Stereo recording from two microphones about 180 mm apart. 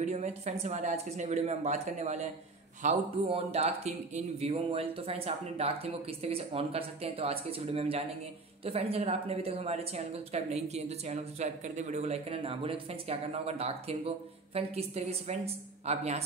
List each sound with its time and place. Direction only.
0.0 s speech: 40° right (ahead or behind)